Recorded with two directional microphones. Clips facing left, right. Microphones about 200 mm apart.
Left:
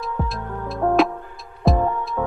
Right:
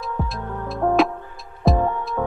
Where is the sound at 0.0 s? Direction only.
Centre (ahead or behind).